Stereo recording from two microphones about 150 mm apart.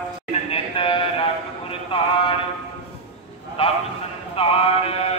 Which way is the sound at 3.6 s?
35° left (ahead or behind).